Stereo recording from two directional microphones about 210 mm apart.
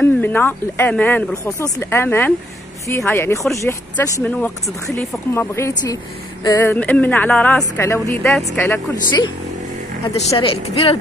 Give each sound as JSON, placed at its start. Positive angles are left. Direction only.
{"t": 0.0, "sound": "speech", "side_deg": 10}
{"t": 10.0, "sound": "speech", "side_deg": 25}